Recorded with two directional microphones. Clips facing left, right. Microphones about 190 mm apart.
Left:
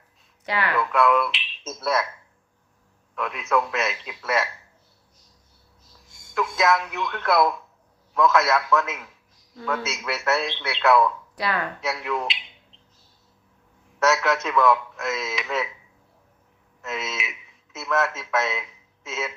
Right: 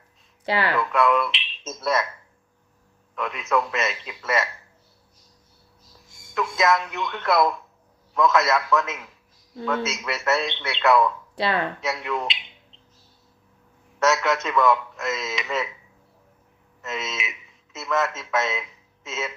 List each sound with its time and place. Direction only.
0.4 s speech: 30° right (ahead or behind)
0.7 s a man's voice: centre (ahead or behind)
3.2 s a man's voice: centre (ahead or behind)
6.3 s a man's voice: centre (ahead or behind)
11.3 s speech: 25° right (ahead or behind)
11.8 s a man's voice: centre (ahead or behind)
14.0 s a man's voice: centre (ahead or behind)
16.8 s a man's voice: centre (ahead or behind)